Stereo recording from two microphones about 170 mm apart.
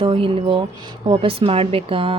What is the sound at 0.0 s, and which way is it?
A woman's voice, 30° right (ahead or behind).